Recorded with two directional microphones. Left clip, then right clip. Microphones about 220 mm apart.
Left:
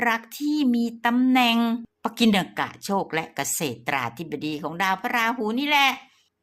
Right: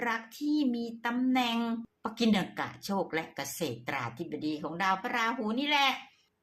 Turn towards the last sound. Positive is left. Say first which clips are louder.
# left 7 dB
turn(degrees=30)  # may be behind; listen again after turning